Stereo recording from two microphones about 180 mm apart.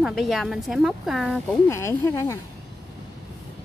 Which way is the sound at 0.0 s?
Centre (ahead or behind).